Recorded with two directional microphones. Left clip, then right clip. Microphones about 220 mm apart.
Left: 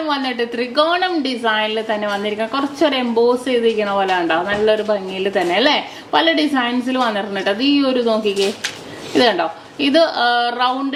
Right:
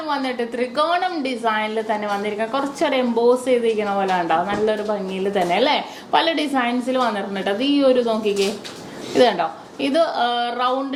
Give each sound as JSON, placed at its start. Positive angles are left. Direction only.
{"t": 0.1, "sound": "a woman's voice", "side_deg": 40}
{"t": 9.1, "sound": "a woman's voice", "side_deg": 45}